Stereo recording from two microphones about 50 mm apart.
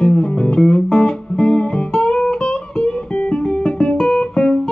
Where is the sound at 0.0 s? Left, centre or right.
Centre.